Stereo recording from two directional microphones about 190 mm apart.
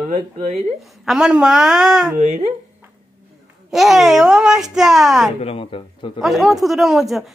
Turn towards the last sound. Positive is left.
turn(degrees=0)  # may be behind; listen again after turning